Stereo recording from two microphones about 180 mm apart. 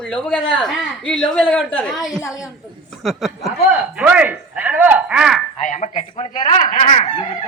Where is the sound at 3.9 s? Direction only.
5° right (ahead or behind).